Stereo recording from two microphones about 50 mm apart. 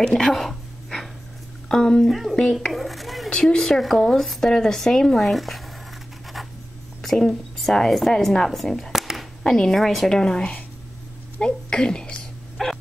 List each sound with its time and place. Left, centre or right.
0.0 s a sound: centre
1.7 s speech: centre
2.0 s speech: centre
3.3 s speech: centre
6.4 s writing: centre
7.0 s a woman's voice: centre
8.9 s a sound: centre
9.4 s speech: centre
10.0 s a child's voice: centre
12.6 s bow-wow: centre